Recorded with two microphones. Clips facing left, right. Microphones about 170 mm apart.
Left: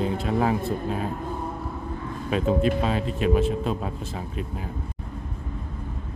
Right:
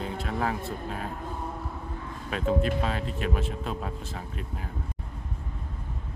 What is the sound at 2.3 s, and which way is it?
Speech, 20° left (ahead or behind).